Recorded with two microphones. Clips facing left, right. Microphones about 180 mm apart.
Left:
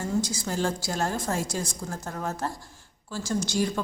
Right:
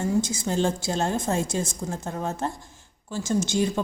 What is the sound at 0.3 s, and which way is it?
A woman's voice, 25° right (ahead or behind).